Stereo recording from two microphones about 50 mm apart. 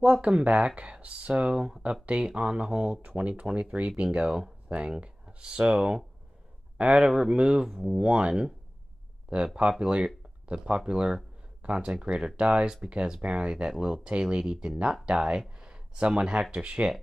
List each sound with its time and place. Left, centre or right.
0.0 s speech: right
9.6 s speech: centre